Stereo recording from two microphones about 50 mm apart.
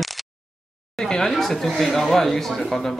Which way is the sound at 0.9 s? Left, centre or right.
Centre.